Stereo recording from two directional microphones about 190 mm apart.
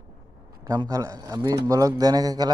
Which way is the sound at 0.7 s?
20° right (ahead or behind).